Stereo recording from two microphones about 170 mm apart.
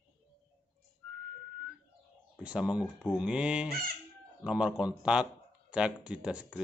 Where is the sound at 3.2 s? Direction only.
5° right (ahead or behind).